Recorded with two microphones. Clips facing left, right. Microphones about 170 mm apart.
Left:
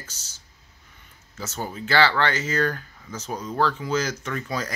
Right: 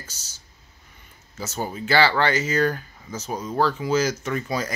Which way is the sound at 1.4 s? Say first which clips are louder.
Right 2 dB; 10° right (ahead or behind).